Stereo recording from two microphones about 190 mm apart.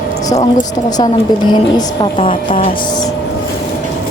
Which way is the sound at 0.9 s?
20° left (ahead or behind).